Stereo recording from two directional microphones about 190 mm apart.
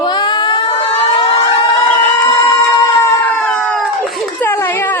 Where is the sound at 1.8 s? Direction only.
15° left (ahead or behind).